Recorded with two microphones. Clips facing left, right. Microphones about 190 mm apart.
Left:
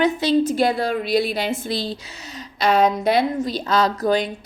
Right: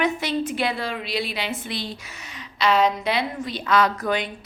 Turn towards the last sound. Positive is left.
turn(degrees=35)  # may be behind; listen again after turning